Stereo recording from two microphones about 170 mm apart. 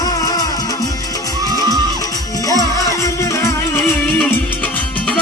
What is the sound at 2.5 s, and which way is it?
Music, 20° left (ahead or behind).